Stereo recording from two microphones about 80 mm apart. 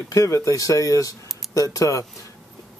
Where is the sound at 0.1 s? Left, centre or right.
Left.